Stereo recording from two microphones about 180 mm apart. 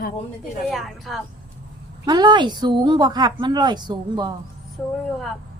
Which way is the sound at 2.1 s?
25° right (ahead or behind).